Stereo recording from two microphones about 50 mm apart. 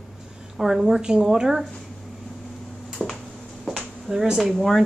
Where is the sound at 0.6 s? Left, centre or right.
Centre.